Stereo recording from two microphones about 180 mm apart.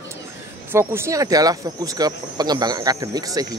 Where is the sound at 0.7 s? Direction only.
15° right (ahead or behind).